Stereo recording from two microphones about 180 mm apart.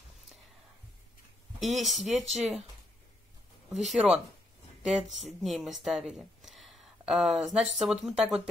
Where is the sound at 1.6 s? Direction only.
Centre (ahead or behind).